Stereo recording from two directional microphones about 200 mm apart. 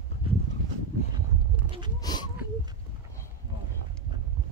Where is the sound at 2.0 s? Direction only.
20° left (ahead or behind).